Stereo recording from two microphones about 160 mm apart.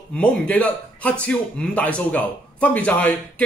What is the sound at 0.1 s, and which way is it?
Speech, 5° left (ahead or behind).